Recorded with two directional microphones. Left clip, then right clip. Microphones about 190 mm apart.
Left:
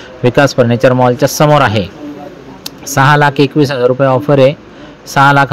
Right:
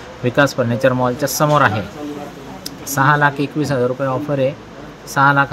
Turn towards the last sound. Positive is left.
turn(degrees=45)  # may be behind; listen again after turning